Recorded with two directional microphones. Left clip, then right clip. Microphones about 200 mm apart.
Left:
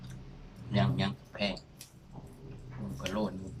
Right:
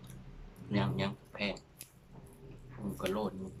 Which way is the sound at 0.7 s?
15° right (ahead or behind).